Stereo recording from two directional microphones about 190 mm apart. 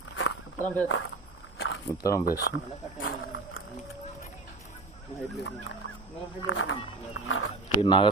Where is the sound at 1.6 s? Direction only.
90° left.